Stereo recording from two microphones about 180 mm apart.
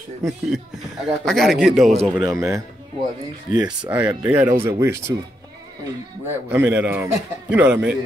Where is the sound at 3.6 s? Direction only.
5° right (ahead or behind).